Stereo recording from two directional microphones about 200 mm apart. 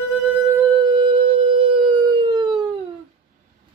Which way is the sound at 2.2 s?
20° right (ahead or behind).